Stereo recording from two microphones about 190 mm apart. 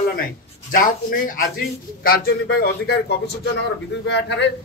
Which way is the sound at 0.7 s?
45° left (ahead or behind).